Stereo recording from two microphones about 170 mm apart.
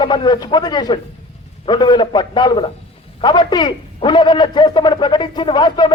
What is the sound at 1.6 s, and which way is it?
A man's voice, 25° left (ahead or behind).